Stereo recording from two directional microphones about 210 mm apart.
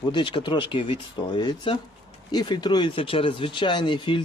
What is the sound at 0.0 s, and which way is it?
A man's voice, 20° left (ahead or behind).